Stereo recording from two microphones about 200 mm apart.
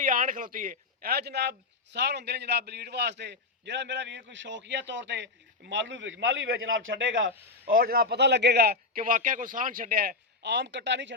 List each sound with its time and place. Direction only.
0.0 s a man's voice: 40° right (ahead or behind); by 7.3 s 70° right (ahead or behind)
7.7 s a man's voice: 45° right (ahead or behind)